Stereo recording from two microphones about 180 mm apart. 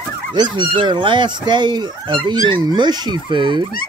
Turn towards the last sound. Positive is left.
turn(degrees=-25)  # may be behind; listen again after turning